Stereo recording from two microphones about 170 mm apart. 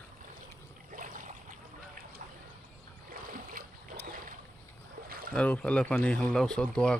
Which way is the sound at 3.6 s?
55° right (ahead or behind).